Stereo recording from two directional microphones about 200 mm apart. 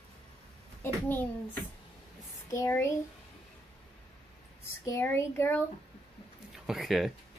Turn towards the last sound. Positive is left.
turn(degrees=0)  # may be behind; listen again after turning